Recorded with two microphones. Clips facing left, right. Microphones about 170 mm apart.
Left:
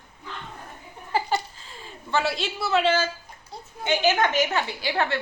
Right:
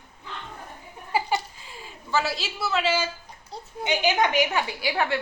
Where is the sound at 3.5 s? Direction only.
35° right (ahead or behind).